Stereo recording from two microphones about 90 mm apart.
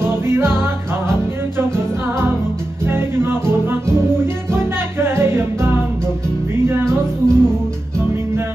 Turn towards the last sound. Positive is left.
turn(degrees=-30)  # may be behind; listen again after turning